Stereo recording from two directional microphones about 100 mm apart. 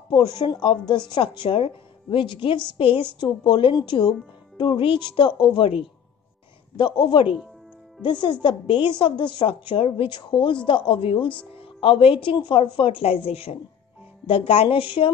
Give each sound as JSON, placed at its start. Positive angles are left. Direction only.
{"t": 0.1, "sound": "a woman's voice", "side_deg": 50}
{"t": 6.8, "sound": "a woman's voice", "side_deg": 50}